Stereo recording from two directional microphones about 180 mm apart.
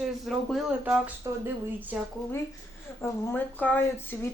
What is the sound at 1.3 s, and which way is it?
Speech, 20° right (ahead or behind).